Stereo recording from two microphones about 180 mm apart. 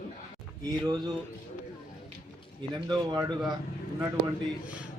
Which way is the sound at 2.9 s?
25° right (ahead or behind).